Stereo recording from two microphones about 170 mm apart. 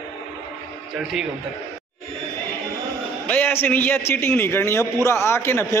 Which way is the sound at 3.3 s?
10° left (ahead or behind).